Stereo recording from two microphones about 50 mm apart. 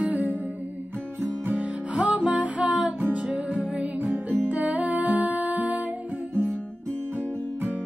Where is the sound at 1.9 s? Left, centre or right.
Right.